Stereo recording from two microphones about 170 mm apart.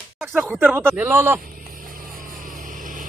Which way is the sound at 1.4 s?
55° right (ahead or behind).